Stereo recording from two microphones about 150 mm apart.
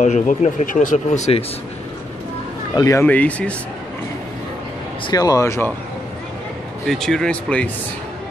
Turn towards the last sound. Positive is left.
turn(degrees=10)  # may be behind; listen again after turning